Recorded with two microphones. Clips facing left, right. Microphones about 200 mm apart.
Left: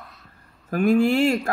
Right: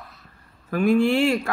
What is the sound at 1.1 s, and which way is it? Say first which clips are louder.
Speech: even; 40° left (ahead or behind).